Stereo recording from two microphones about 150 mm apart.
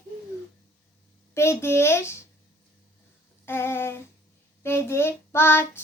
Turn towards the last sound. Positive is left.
turn(degrees=15)  # may be behind; listen again after turning